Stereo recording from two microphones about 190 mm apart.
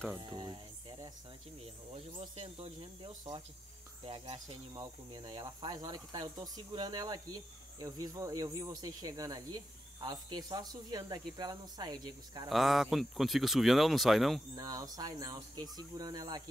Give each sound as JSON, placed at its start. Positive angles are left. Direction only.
{"t": 0.2, "sound": "speech", "side_deg": -25}
{"t": 2.1, "sound": "speech", "side_deg": -30}
{"t": 12.4, "sound": "speech", "side_deg": 0}
{"t": 14.5, "sound": "speech", "side_deg": -20}